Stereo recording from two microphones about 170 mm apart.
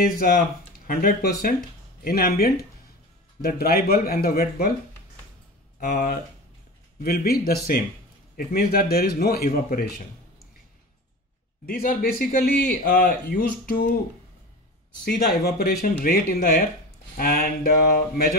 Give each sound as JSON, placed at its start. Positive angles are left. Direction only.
{"t": 0.0, "sound": "speech", "side_deg": 60}
{"t": 5.8, "sound": "speech", "side_deg": 50}
{"t": 7.0, "sound": "speech", "side_deg": 65}
{"t": 11.6, "sound": "speech", "side_deg": 55}
{"t": 15.0, "sound": "speech", "side_deg": 65}